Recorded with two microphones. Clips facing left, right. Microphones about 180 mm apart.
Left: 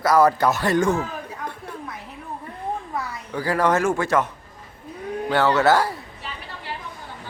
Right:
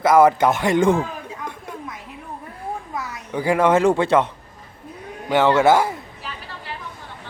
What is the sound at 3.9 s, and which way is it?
Speech, 30° right (ahead or behind).